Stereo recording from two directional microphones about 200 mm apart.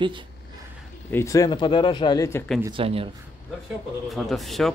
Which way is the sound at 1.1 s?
15° left (ahead or behind).